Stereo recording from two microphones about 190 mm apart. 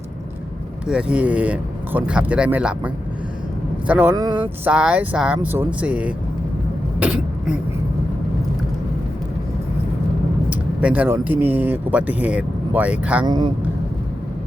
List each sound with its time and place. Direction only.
0.9 s speech: 5° right (ahead or behind)
4.1 s speech: 20° right (ahead or behind)
4.7 s speech: 5° right (ahead or behind)
7.0 s throat clearing: 5° right (ahead or behind)
10.5 s speech: 5° right (ahead or behind)
13.2 s speech: 20° right (ahead or behind)